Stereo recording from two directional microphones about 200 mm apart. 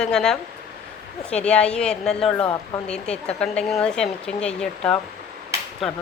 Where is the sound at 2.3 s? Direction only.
20° left (ahead or behind).